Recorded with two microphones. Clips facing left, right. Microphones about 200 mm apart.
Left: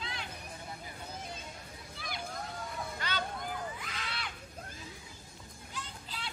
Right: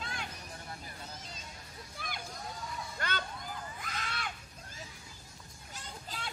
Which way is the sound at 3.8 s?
45° right (ahead or behind).